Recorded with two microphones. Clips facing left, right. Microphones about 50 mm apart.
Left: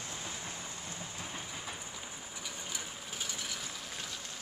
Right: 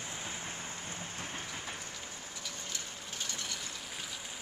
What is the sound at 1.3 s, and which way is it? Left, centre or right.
Train, centre.